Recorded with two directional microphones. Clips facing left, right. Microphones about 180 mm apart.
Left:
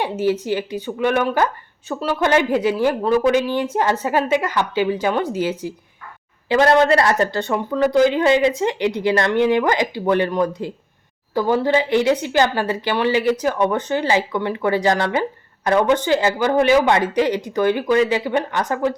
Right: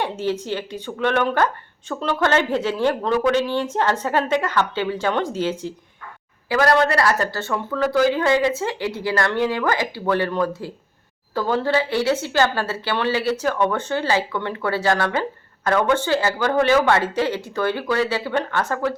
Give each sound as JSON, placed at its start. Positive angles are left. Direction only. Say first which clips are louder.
{"t": 0.0, "sound": "speech", "louder": "left 4 dB", "side_deg": 10}
{"t": 6.5, "sound": "speech", "louder": "left 4 dB", "side_deg": 25}